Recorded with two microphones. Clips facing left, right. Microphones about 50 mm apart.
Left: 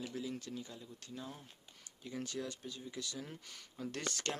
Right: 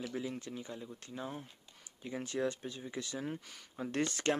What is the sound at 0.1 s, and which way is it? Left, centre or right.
Speech, right.